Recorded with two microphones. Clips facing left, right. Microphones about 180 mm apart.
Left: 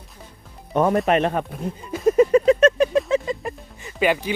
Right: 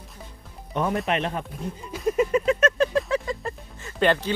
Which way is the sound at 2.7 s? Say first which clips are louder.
Left 4 dB; 15° left (ahead or behind).